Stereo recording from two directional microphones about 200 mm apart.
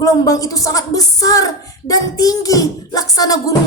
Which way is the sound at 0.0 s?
15° left (ahead or behind).